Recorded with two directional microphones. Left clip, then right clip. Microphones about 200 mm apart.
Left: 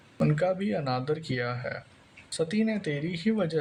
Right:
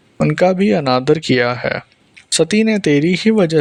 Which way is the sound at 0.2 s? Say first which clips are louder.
Right 13 dB; 40° right (ahead or behind).